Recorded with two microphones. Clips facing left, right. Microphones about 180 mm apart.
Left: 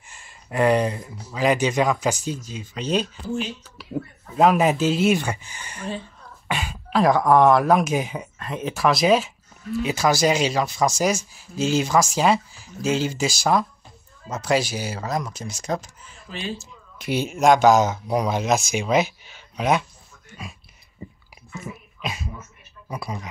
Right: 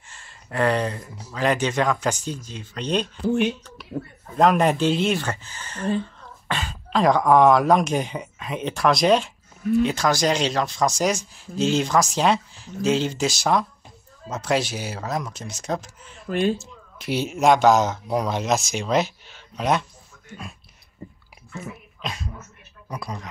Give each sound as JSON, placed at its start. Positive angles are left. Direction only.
{"t": 0.1, "sound": "a sound", "side_deg": 10}
{"t": 1.3, "sound": "speech", "side_deg": 10}
{"t": 3.3, "sound": "speech", "side_deg": -65}
{"t": 4.4, "sound": "speech", "side_deg": 5}
{"t": 16.3, "sound": "speech", "side_deg": -55}
{"t": 16.5, "sound": "speech", "side_deg": 0}
{"t": 22.0, "sound": "speech", "side_deg": 5}